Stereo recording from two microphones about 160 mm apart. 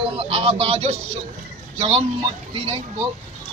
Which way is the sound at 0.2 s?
40° right (ahead or behind).